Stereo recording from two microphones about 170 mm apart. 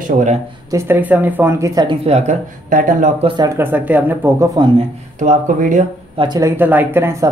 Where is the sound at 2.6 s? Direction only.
55° right (ahead or behind).